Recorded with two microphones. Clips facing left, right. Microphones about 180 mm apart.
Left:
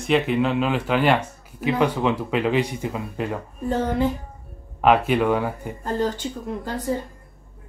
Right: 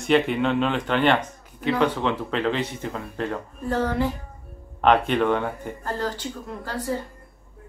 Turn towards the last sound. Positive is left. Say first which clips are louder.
# left 3 dB
turn(degrees=20)  # may be behind; listen again after turning